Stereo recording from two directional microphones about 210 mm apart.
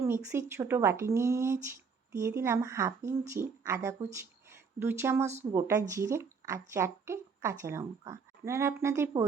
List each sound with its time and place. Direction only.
0.0 s a woman's voice: 15° right (ahead or behind)